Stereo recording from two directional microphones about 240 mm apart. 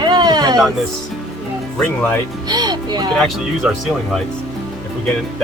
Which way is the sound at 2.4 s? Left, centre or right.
Centre.